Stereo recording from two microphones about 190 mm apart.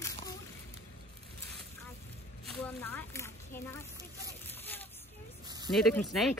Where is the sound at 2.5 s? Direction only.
10° left (ahead or behind).